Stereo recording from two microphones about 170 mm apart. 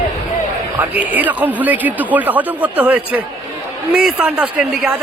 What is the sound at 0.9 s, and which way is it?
A man's voice, 10° right (ahead or behind).